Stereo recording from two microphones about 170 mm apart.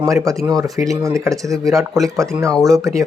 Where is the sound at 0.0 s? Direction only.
20° right (ahead or behind).